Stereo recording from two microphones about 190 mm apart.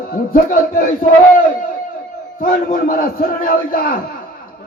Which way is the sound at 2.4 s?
45° left (ahead or behind).